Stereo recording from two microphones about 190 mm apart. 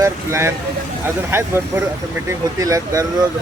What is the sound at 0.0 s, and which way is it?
Speech, 15° right (ahead or behind).